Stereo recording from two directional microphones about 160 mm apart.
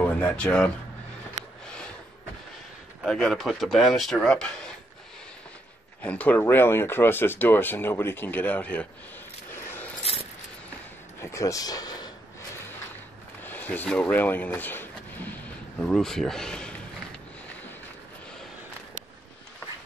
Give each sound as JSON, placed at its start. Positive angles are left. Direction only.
{"t": 0.0, "sound": "speech", "side_deg": 10}
{"t": 3.1, "sound": "speech", "side_deg": 5}
{"t": 6.0, "sound": "speech", "side_deg": 10}
{"t": 10.1, "sound": "keys jangling", "side_deg": 40}
{"t": 11.1, "sound": "speech", "side_deg": 20}
{"t": 13.4, "sound": "speech", "side_deg": 10}